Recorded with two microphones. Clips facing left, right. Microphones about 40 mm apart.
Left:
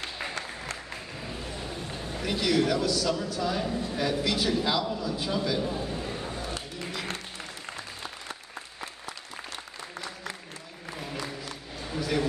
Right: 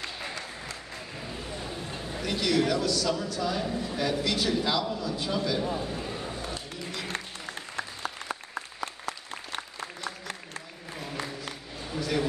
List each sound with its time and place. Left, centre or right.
0.3 s applause: left
1.6 s run: centre
2.1 s a man's voice: centre
5.8 s a sound: centre
7.1 s applause: right
7.7 s applause: right
8.8 s applause: right
11.9 s a sound: centre